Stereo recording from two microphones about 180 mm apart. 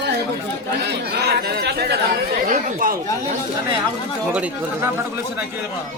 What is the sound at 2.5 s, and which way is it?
Speech, 45° right (ahead or behind).